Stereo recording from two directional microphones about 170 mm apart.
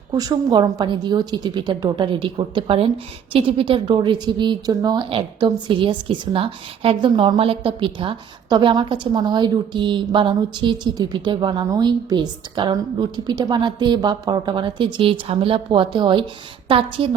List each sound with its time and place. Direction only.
0.1 s a woman's voice: 25° right (ahead or behind)